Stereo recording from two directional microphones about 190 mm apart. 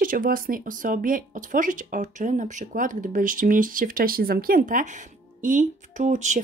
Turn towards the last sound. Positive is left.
turn(degrees=-40)  # may be behind; listen again after turning